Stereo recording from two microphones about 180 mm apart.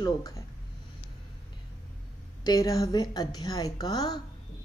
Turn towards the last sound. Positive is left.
turn(degrees=20)  # may be behind; listen again after turning